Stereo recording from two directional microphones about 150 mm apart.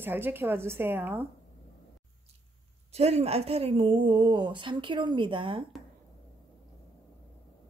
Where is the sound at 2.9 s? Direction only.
45° right (ahead or behind).